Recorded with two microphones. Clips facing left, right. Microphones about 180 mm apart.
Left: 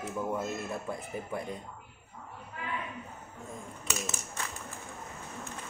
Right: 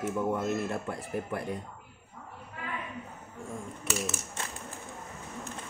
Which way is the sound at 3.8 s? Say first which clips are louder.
Right 3 dB; 25° right (ahead or behind).